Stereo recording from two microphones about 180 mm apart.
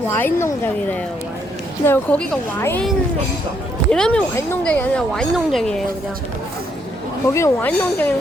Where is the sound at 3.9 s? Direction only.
5° left (ahead or behind).